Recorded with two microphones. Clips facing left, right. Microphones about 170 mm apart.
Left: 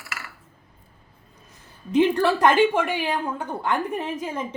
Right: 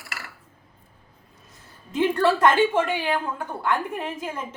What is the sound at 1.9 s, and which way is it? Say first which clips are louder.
A woman's voice: left 2 dB; 15° left (ahead or behind).